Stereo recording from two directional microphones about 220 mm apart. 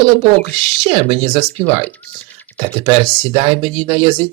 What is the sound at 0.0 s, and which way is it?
Speech, 25° right (ahead or behind).